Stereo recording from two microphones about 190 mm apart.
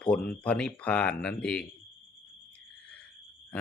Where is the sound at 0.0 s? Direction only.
5° left (ahead or behind).